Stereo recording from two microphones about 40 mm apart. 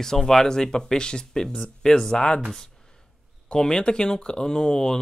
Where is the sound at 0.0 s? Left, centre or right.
Centre.